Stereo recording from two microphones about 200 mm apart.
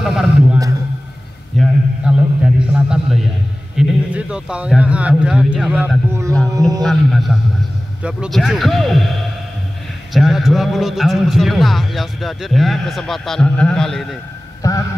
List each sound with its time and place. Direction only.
0.0 s a man's voice: 5° right (ahead or behind)
1.6 s a man's voice: 5° right (ahead or behind)
6.8 s a man's voice: centre (ahead or behind)
10.1 s a man's voice: centre (ahead or behind)
14.6 s a man's voice: 15° left (ahead or behind)